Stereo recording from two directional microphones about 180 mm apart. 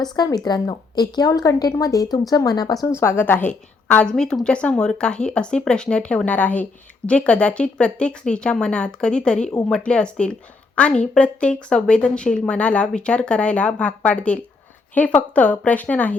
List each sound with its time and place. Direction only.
0.0 s a woman's voice: 20° left (ahead or behind)